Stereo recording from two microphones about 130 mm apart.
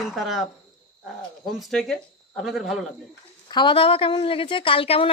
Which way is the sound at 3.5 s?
35° left (ahead or behind).